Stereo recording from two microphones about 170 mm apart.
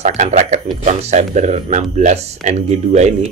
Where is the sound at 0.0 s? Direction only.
40° right (ahead or behind).